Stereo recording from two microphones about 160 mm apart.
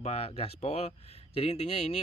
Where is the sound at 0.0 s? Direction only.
40° left (ahead or behind).